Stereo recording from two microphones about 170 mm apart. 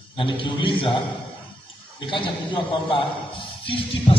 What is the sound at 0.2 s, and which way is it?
Speech, 30° left (ahead or behind).